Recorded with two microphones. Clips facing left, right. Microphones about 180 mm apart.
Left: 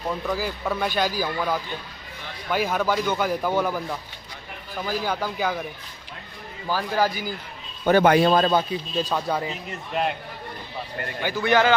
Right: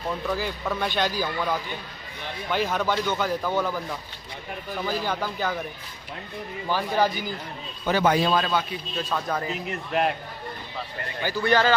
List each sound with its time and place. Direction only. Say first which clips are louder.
0.3 s a man's voice: left 1 dB; 5° left (ahead or behind)
4.8 s speech: left 2 dB; 10° left (ahead or behind)
6.7 s speech: even; 5° left (ahead or behind)
7.8 s a man's voice: left 5 dB; 60° left (ahead or behind)
8.4 s a man's voice: left 5 dB; 35° left (ahead or behind)
9.1 s speech: even; 10° left (ahead or behind)
11.2 s speech: left 1 dB; 15° left (ahead or behind)